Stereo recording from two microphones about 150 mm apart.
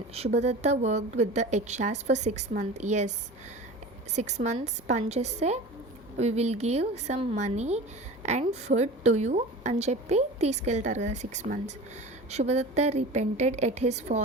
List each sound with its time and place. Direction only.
0.1 s a woman's voice: 45° right (ahead or behind)
4.1 s a woman's voice: 50° right (ahead or behind)